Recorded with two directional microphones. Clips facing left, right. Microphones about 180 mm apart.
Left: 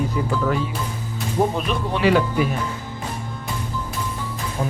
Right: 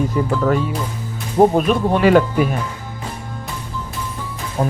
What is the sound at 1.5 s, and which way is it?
Speech, 45° right (ahead or behind).